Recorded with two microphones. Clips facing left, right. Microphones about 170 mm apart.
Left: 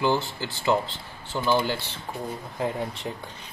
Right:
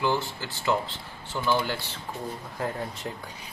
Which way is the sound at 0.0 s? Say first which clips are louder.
Left 3 dB; 25° left (ahead or behind).